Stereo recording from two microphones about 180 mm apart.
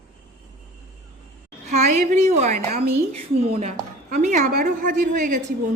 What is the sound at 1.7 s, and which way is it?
A woman's voice, 40° right (ahead or behind).